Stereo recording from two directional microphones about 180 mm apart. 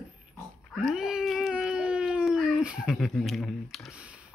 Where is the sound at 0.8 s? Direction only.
5° right (ahead or behind).